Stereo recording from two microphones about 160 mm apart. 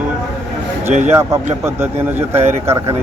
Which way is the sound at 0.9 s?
45° right (ahead or behind).